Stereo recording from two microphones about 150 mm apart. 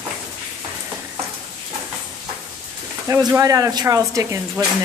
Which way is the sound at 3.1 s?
20° right (ahead or behind).